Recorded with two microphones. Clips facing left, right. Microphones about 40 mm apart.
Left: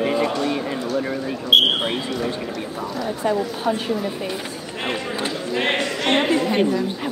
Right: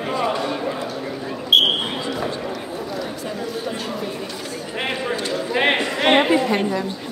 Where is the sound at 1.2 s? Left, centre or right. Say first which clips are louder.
Right 1 dB; centre.